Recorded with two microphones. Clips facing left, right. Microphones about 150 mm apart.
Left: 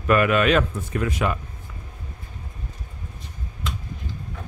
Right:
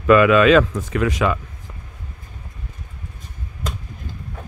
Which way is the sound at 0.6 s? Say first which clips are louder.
Right 5 dB; 90° right.